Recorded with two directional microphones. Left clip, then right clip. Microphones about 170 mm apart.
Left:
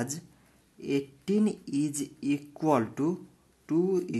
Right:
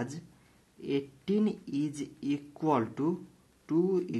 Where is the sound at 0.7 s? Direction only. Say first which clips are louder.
Left 2 dB; 30° left (ahead or behind).